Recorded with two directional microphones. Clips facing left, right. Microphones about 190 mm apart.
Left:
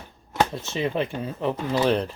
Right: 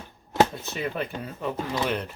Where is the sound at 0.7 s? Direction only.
25° left (ahead or behind).